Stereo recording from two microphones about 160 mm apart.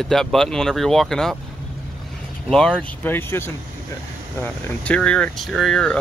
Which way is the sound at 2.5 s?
5° left (ahead or behind).